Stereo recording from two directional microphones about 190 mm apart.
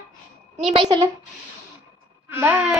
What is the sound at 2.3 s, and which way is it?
Child singing, 10° right (ahead or behind).